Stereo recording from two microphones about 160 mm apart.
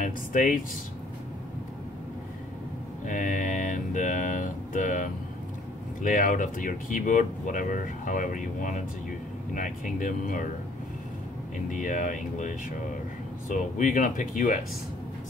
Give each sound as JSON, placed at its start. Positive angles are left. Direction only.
{"t": 0.0, "sound": "speech", "side_deg": 55}
{"t": 3.1, "sound": "mantra", "side_deg": 55}
{"t": 6.0, "sound": "speech", "side_deg": 55}
{"t": 11.7, "sound": "speech", "side_deg": 50}